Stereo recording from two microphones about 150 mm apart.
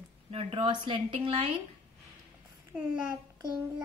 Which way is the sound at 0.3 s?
40° right (ahead or behind).